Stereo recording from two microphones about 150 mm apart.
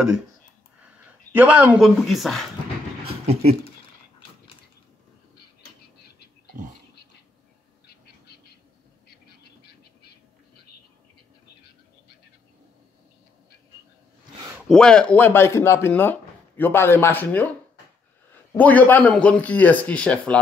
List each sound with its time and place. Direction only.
1.3 s speech: 10° right (ahead or behind)
7.8 s bird: 90° left
14.7 s speech: 5° left (ahead or behind)
18.5 s speech: 10° left (ahead or behind)